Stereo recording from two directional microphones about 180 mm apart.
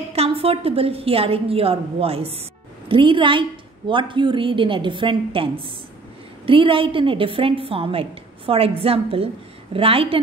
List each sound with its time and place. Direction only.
0.1 s a woman's voice: 35° right (ahead or behind)